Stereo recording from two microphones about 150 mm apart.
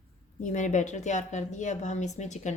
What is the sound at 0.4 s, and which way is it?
A woman's voice, 55° left (ahead or behind).